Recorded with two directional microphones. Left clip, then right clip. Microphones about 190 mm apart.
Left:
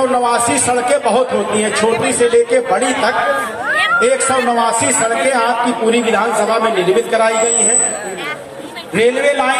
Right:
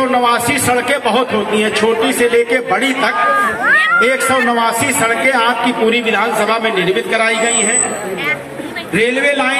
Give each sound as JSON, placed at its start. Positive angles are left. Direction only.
{"t": 0.1, "sound": "a man's voice", "side_deg": 45}
{"t": 8.9, "sound": "a man's voice", "side_deg": 65}